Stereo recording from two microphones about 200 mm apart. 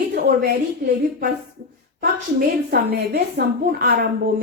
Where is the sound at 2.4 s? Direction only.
50° right (ahead or behind).